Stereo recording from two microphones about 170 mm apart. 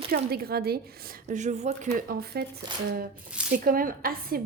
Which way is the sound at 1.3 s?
45° right (ahead or behind).